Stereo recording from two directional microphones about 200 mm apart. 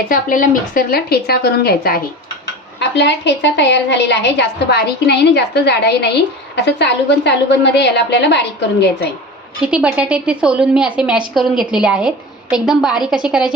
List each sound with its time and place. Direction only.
0.1 s a woman's voice: 45° left (ahead or behind); by 8.4 s 60° left (ahead or behind)
9.6 s a woman's voice: 5° right (ahead or behind)